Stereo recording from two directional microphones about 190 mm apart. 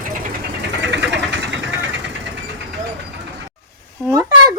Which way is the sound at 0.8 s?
65° right (ahead or behind).